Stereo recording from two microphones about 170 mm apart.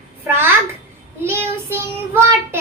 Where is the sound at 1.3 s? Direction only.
15° right (ahead or behind).